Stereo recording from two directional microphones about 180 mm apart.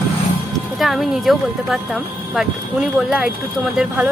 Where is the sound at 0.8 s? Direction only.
Centre (ahead or behind).